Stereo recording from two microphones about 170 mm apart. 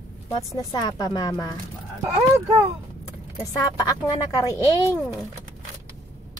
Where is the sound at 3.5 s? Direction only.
20° left (ahead or behind).